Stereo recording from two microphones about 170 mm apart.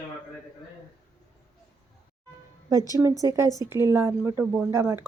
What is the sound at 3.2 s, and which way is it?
Speech, 20° right (ahead or behind).